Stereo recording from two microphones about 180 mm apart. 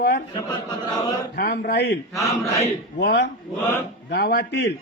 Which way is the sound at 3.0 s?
70° left (ahead or behind).